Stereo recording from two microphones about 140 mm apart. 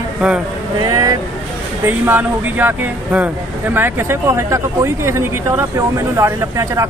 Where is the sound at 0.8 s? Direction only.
25° right (ahead or behind).